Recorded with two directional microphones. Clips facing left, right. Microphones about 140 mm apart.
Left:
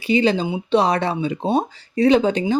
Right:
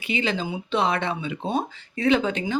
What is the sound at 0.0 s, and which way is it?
Speech, 35° left (ahead or behind).